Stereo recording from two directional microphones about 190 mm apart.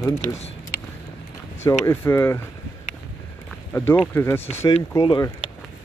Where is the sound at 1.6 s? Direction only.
15° left (ahead or behind).